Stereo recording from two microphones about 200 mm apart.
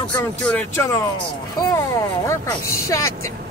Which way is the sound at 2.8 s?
15° left (ahead or behind).